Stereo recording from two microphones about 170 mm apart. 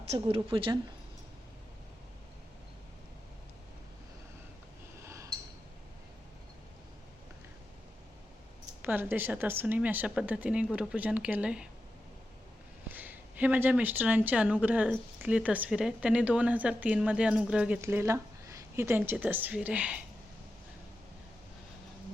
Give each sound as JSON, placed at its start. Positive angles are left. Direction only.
{"t": 0.0, "sound": "a woman's voice", "side_deg": -35}
{"t": 5.0, "sound": "a sound", "side_deg": -20}
{"t": 8.8, "sound": "speech", "side_deg": -10}
{"t": 12.9, "sound": "speech", "side_deg": -10}